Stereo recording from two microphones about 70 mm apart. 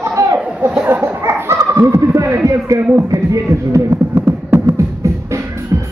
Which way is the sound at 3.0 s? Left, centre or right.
Right.